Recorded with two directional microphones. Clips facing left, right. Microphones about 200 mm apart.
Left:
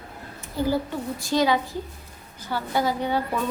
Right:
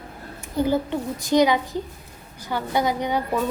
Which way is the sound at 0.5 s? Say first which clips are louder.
Right 3 dB; 20° right (ahead or behind).